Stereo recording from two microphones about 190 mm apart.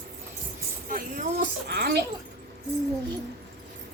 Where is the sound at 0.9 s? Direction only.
45° right (ahead or behind).